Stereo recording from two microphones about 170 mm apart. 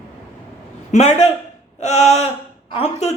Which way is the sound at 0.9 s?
40° left (ahead or behind).